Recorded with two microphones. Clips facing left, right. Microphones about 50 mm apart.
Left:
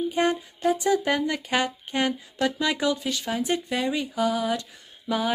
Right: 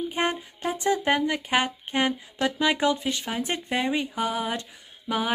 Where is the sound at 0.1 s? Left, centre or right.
Right.